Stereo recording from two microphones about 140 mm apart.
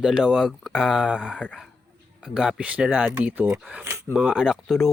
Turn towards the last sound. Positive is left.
turn(degrees=0)  # may be behind; listen again after turning